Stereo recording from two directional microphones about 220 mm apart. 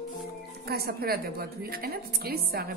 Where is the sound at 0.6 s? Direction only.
45° right (ahead or behind).